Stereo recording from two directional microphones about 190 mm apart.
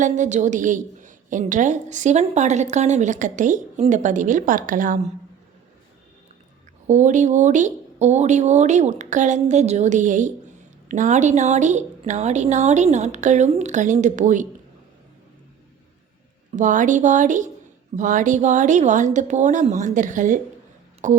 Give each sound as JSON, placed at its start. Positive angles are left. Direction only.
{"t": 0.0, "sound": "a woman's voice", "side_deg": -40}
{"t": 6.8, "sound": "a woman's voice", "side_deg": -40}
{"t": 16.5, "sound": "a woman's voice", "side_deg": -40}